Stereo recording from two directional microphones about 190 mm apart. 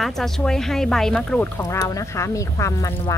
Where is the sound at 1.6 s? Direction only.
15° left (ahead or behind).